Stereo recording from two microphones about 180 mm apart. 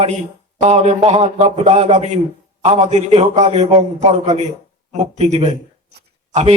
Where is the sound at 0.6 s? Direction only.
35° right (ahead or behind).